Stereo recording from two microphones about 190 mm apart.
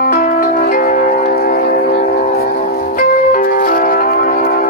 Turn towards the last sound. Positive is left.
turn(degrees=45)  # may be behind; listen again after turning